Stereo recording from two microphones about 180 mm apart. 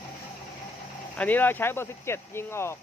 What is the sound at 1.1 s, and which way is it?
Speech, 10° left (ahead or behind).